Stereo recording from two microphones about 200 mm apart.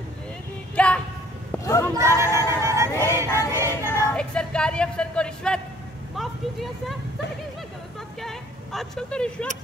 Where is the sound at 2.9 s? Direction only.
10° left (ahead or behind).